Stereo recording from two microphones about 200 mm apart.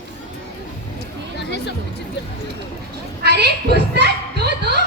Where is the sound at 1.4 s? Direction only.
55° left (ahead or behind).